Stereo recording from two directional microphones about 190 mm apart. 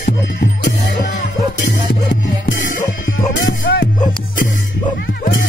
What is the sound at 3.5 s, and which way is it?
Music, 60° left (ahead or behind).